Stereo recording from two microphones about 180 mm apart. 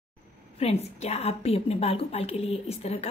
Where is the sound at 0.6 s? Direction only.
35° left (ahead or behind).